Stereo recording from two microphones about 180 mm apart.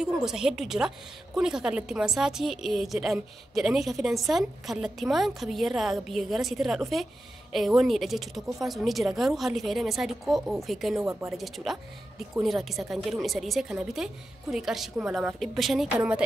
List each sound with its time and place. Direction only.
0.0 s a woman's voice: 5° right (ahead or behind)
11.0 s a woman's voice: 15° right (ahead or behind)
11.2 s a woman's voice: centre (ahead or behind)